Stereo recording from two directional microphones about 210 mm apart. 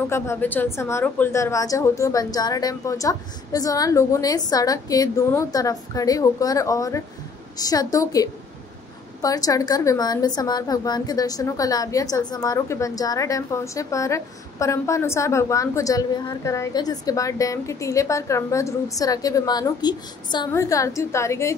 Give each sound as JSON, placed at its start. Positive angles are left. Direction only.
{"t": 0.1, "sound": "a woman's voice", "side_deg": 10}